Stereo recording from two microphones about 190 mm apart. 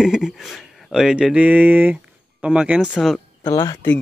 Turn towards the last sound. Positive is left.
turn(degrees=15)  # may be behind; listen again after turning